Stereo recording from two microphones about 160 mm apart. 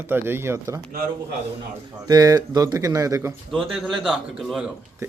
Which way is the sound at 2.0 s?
25° right (ahead or behind).